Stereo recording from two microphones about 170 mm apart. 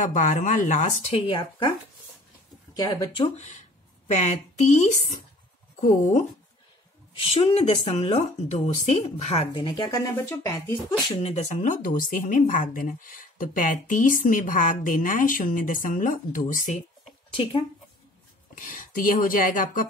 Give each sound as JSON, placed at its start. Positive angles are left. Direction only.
{"t": 0.0, "sound": "a woman's voice", "side_deg": 50}
{"t": 1.1, "sound": "speech", "side_deg": 30}
{"t": 2.7, "sound": "speech", "side_deg": 20}
{"t": 3.3, "sound": "a woman's voice", "side_deg": 45}
{"t": 7.2, "sound": "speech", "side_deg": 35}
{"t": 9.5, "sound": "speech", "side_deg": 25}
{"t": 10.9, "sound": "a woman's voice", "side_deg": 35}
{"t": 17.3, "sound": "speech", "side_deg": 30}
{"t": 18.5, "sound": "a woman's voice", "side_deg": 55}